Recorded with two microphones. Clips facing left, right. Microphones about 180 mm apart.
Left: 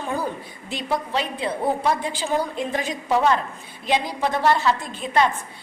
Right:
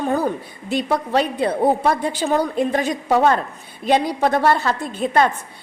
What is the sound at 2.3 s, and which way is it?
A woman's voice, 60° right (ahead or behind).